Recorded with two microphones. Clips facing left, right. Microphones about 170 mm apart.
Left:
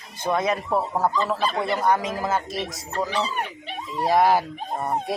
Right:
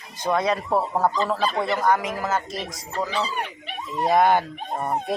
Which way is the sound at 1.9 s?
25° left (ahead or behind).